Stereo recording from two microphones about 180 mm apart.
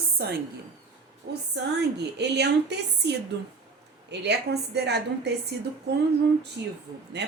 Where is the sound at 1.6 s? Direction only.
75° right (ahead or behind).